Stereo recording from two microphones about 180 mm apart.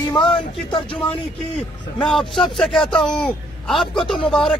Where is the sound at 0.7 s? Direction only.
30° left (ahead or behind).